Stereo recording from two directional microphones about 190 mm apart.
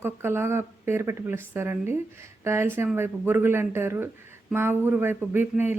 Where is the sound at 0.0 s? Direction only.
10° right (ahead or behind).